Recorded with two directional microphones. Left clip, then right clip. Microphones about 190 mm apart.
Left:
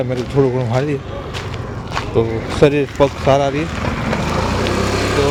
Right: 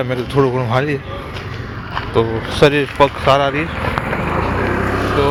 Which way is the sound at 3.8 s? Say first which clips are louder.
Right 1 dB; 35° right (ahead or behind).